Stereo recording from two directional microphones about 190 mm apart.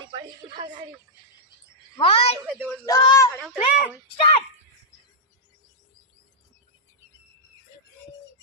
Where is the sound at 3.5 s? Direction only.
45° left (ahead or behind).